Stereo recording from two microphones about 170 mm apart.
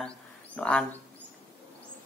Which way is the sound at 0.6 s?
5° left (ahead or behind).